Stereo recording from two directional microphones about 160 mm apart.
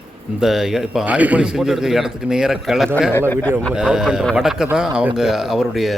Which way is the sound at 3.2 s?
10° left (ahead or behind).